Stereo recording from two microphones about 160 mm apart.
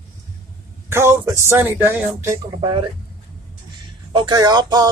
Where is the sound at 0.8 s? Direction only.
15° right (ahead or behind).